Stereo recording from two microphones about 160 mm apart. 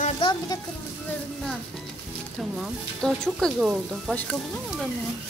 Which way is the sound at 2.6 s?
Centre (ahead or behind).